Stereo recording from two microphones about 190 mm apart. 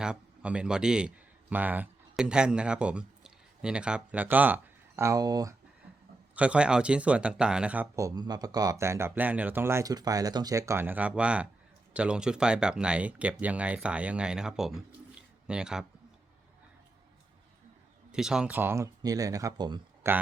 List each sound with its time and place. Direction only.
0.0 s a man's voice: 5° right (ahead or behind)
6.3 s speech: 5° right (ahead or behind)
18.1 s speech: 5° right (ahead or behind); by 20.1 s 20° right (ahead or behind)